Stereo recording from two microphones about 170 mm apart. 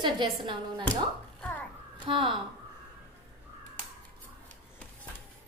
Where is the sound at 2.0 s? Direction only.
30° right (ahead or behind).